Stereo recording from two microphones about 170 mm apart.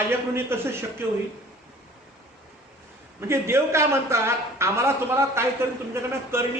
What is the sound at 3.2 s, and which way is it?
A man's voice, 15° right (ahead or behind).